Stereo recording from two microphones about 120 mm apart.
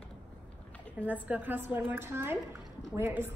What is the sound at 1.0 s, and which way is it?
A woman's voice, 15° right (ahead or behind).